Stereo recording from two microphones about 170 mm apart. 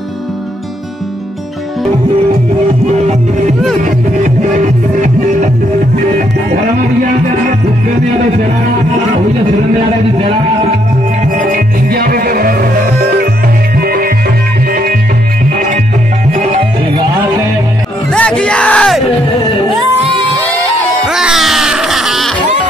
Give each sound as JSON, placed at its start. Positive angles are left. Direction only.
{"t": 3.8, "sound": "music", "side_deg": -45}
{"t": 11.2, "sound": "music", "side_deg": -50}
{"t": 16.3, "sound": "music", "side_deg": -35}
{"t": 18.1, "sound": "music", "side_deg": 5}
{"t": 21.1, "sound": "music", "side_deg": -5}